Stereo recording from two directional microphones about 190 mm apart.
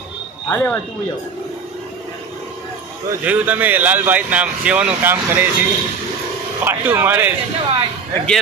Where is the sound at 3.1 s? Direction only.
10° right (ahead or behind).